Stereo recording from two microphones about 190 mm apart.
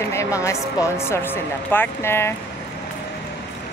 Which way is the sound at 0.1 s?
15° left (ahead or behind).